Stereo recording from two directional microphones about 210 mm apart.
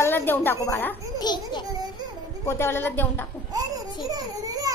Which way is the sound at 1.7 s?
20° right (ahead or behind).